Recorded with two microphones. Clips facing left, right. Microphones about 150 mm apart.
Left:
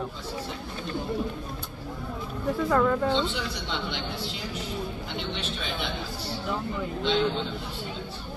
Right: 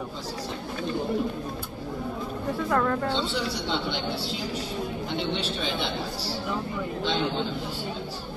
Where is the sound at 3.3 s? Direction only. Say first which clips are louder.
Right 3 dB; 35° right (ahead or behind).